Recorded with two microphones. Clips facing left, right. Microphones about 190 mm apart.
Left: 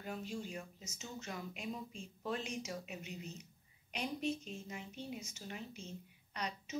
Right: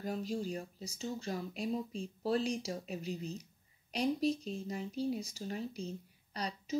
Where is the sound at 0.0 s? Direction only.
35° right (ahead or behind).